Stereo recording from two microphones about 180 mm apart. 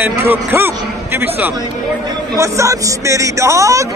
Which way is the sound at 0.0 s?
10° right (ahead or behind).